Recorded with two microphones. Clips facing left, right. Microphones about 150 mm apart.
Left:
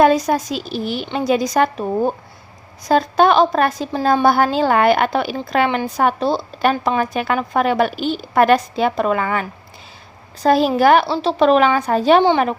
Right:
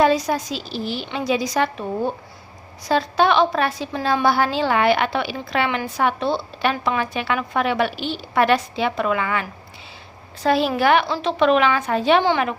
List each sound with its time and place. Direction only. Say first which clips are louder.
0.0 s a woman's voice: left 4 dB; 50° left (ahead or behind)
2.8 s a woman's voice: left 4 dB; 45° left (ahead or behind)